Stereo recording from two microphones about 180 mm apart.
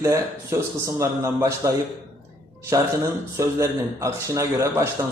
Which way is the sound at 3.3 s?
15° right (ahead or behind).